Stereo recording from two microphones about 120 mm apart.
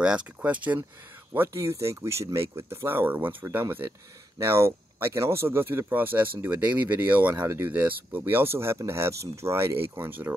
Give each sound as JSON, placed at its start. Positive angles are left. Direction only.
{"t": 0.0, "sound": "speech", "side_deg": -10}